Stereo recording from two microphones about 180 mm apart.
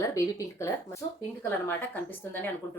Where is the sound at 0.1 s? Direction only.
20° left (ahead or behind).